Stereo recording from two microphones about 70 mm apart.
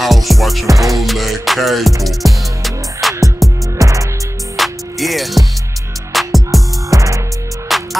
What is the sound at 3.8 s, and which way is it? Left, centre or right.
Music, right.